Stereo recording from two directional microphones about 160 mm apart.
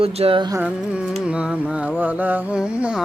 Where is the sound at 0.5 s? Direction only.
10° right (ahead or behind).